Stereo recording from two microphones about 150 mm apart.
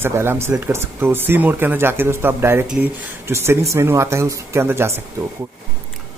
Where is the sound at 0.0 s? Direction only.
15° right (ahead or behind).